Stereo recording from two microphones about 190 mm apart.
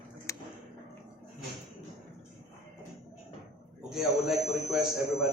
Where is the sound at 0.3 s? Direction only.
15° left (ahead or behind).